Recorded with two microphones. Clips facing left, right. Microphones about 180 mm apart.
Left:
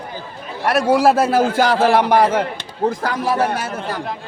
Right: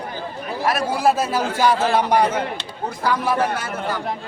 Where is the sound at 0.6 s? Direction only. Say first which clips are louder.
Left 5 dB; 70° left (ahead or behind); by 3.4 s 50° left (ahead or behind).